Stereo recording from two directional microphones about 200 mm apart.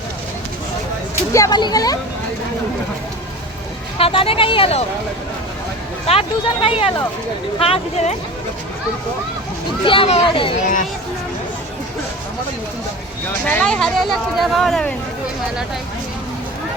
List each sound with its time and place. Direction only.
1.3 s speech: 20° left (ahead or behind)
3.9 s speech: 25° left (ahead or behind)
6.1 s speech: 30° left (ahead or behind)
9.8 s speech: 25° left (ahead or behind)
10.6 s speech: 40° left (ahead or behind)
13.4 s speech: 5° left (ahead or behind)